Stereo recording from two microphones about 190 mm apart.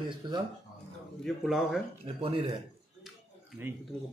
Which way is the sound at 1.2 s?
Centre (ahead or behind).